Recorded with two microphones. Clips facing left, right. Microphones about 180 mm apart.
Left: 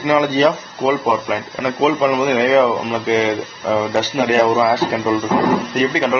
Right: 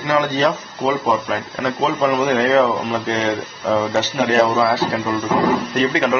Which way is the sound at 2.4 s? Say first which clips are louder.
Left 3 dB; 5° left (ahead or behind).